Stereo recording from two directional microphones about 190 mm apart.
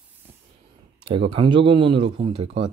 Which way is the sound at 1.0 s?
30° right (ahead or behind).